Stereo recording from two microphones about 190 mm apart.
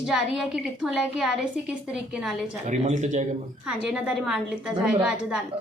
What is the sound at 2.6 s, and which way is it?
Speech, 40° right (ahead or behind).